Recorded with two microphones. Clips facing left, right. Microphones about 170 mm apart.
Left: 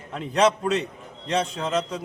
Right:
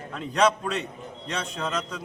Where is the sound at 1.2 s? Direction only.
25° left (ahead or behind).